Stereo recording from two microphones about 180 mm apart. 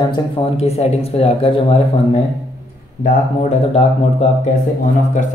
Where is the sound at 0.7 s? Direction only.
35° left (ahead or behind).